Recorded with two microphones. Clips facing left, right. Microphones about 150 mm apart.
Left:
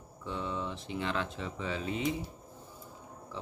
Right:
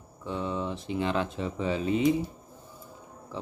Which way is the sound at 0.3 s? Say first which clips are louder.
Right 5 dB; 15° right (ahead or behind).